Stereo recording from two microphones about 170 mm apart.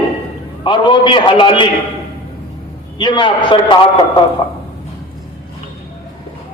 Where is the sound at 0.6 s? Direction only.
30° left (ahead or behind).